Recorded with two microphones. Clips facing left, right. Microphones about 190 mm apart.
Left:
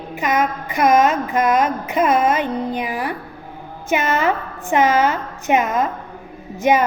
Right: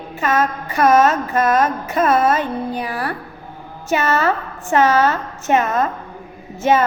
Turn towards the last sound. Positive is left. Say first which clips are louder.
# even
turn(degrees=15)  # may be behind; listen again after turning